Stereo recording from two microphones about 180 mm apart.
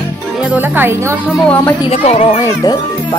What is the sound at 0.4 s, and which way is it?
Speech, 10° right (ahead or behind).